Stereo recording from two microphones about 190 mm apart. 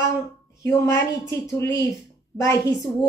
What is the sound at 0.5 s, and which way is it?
A woman's voice, 15° left (ahead or behind).